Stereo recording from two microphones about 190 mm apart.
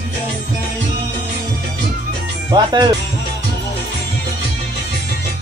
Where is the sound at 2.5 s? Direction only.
20° right (ahead or behind).